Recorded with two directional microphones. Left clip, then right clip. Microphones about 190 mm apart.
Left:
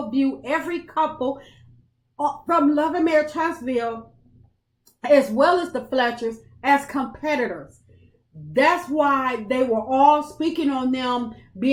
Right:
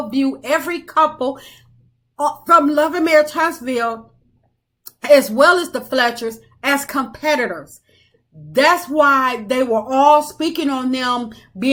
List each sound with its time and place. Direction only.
0.1 s speech: 20° right (ahead or behind)
2.1 s speech: 15° right (ahead or behind)
5.0 s speech: 15° right (ahead or behind)
8.5 s speech: 20° right (ahead or behind)